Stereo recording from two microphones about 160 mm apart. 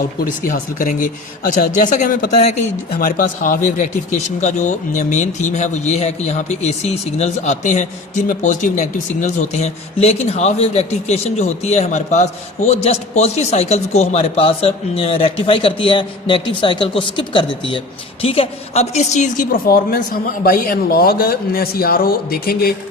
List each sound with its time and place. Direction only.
0.4 s a woman's voice: 60° left (ahead or behind)